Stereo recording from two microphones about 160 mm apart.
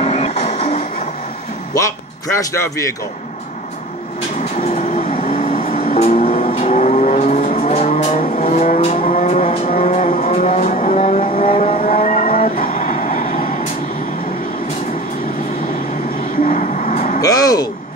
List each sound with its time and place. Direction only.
0.0 s music: 40° left (ahead or behind)
2.3 s a man's voice: 20° left (ahead or behind)
4.7 s vehicle: 45° left (ahead or behind)
16.4 s vehicle: 50° left (ahead or behind)
17.2 s a sound: 20° left (ahead or behind)